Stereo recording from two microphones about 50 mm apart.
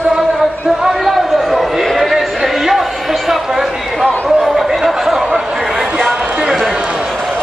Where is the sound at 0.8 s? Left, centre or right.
Centre.